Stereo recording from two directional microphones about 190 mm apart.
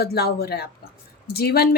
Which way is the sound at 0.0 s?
55° left (ahead or behind).